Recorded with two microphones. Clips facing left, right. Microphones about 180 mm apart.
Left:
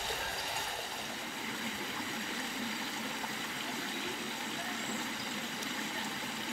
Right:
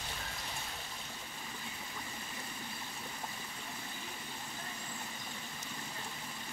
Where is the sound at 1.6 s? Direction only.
90° left.